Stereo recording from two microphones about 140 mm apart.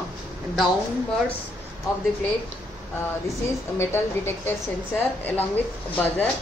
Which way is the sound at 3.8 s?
15° left (ahead or behind).